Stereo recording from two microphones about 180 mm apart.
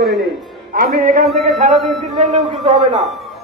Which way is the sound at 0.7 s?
50° right (ahead or behind).